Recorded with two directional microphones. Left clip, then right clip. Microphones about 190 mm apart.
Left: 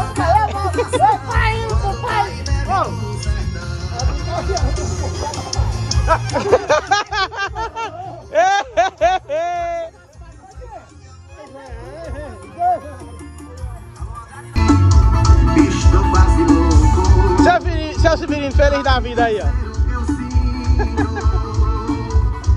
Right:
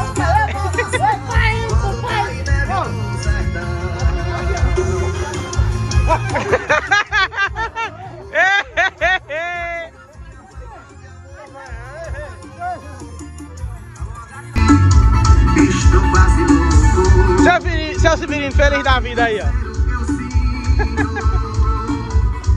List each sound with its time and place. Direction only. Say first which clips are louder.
0.0 s music: left 1 dB; 15° left (ahead or behind)
1.1 s music: even; 30° left (ahead or behind)
2.2 s music: right 2 dB; 25° right (ahead or behind)
4.4 s music: right 1 dB; 15° left (ahead or behind)
5.8 s music: left 1 dB; 15° right (ahead or behind)
6.3 s a sound: left 2 dB; 15° left (ahead or behind)
12.0 s music: right 1 dB; 60° left (ahead or behind)
14.5 s music: right 2 dB; 30° left (ahead or behind)
17.4 s music: left 1 dB; 15° left (ahead or behind)
19.5 s music: right 1 dB; 30° left (ahead or behind)
20.7 s music: right 1 dB; 15° left (ahead or behind)
21.3 s music: right 1 dB; 30° left (ahead or behind)